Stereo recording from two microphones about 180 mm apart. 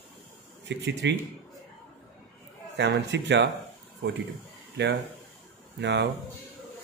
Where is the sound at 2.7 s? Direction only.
75° right (ahead or behind).